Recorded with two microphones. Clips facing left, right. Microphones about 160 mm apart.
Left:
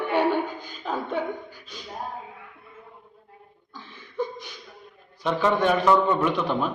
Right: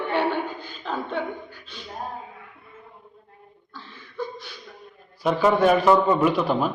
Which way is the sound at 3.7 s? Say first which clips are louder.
Left 3 dB; 15° left (ahead or behind).